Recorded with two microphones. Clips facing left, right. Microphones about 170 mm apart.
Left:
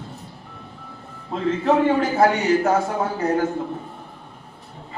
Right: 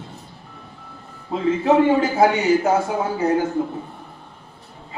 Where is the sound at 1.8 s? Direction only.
Centre (ahead or behind).